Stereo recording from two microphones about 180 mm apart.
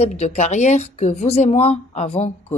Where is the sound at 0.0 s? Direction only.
40° left (ahead or behind).